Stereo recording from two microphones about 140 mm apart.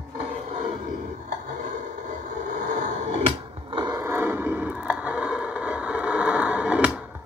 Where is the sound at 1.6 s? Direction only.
65° right (ahead or behind).